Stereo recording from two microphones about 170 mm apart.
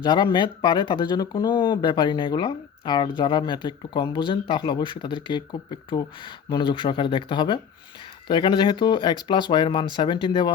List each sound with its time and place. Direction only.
0.0 s speech: 25° left (ahead or behind)